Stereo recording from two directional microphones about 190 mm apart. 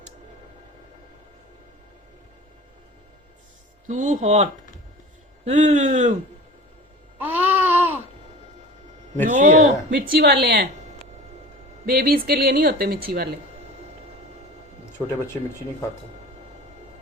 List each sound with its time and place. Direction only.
3.8 s speech: 40° right (ahead or behind)
5.5 s speech: 40° right (ahead or behind)
7.2 s a sound: 10° right (ahead or behind)
9.3 s speech: 40° right (ahead or behind)
9.9 s a woman's voice: 55° right (ahead or behind)
11.9 s speech: 50° right (ahead or behind)
14.9 s speech: 10° left (ahead or behind)